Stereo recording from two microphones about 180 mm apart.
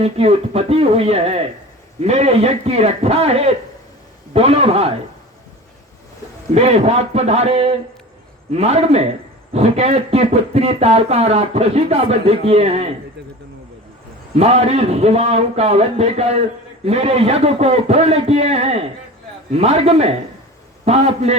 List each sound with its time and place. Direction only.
0.0 s a man's voice: 35° right (ahead or behind)
6.5 s a man's voice: 35° right (ahead or behind)
14.3 s a man's voice: 35° right (ahead or behind)